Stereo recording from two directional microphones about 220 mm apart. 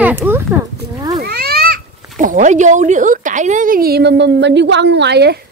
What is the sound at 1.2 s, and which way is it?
Speech, 45° right (ahead or behind).